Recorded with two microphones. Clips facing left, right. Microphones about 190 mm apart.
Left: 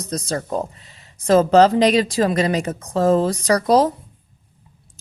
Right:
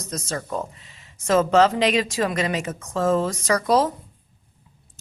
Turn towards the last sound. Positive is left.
turn(degrees=35)  # may be behind; listen again after turning